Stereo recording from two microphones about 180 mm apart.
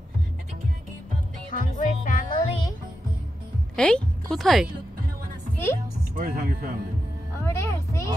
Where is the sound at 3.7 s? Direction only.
5° left (ahead or behind).